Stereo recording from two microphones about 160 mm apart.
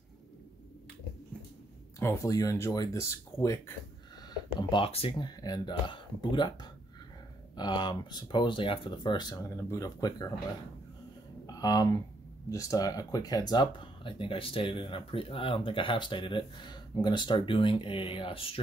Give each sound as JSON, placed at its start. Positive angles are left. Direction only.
{"t": 2.0, "sound": "speech", "side_deg": 20}
{"t": 4.6, "sound": "speech", "side_deg": 30}
{"t": 11.4, "sound": "speech", "side_deg": 25}